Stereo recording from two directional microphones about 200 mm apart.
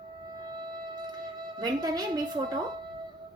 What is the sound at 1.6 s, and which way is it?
A woman's voice, 20° right (ahead or behind).